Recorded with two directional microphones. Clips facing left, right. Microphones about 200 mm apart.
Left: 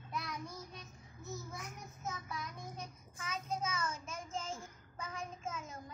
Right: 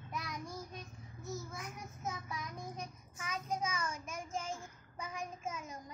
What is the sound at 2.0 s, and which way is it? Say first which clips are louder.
Child singing: right 1 dB; 10° right (ahead or behind).